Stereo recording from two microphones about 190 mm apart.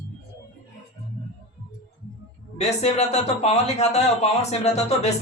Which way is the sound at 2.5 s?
35° left (ahead or behind).